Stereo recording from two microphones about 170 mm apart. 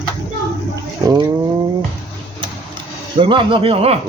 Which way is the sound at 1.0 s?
25° right (ahead or behind).